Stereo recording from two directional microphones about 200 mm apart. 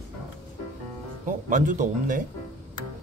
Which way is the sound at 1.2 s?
40° right (ahead or behind).